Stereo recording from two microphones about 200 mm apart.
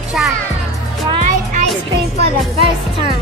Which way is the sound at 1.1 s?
35° right (ahead or behind).